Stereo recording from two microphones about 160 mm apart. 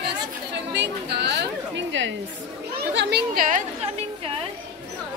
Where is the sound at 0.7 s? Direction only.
90° right.